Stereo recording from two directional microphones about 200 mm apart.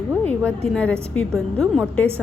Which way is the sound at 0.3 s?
5° left (ahead or behind).